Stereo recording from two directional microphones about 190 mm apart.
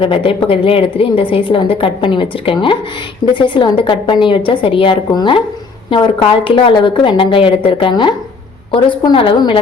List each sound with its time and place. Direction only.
0.0 s a woman's voice: 25° left (ahead or behind)